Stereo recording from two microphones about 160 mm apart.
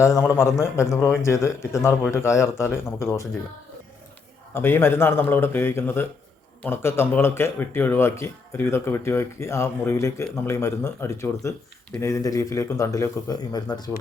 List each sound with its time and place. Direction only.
0.0 s speech: 15° left (ahead or behind)
4.5 s speech: 15° left (ahead or behind)